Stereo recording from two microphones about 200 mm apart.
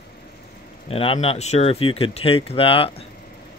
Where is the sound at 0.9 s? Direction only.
30° left (ahead or behind).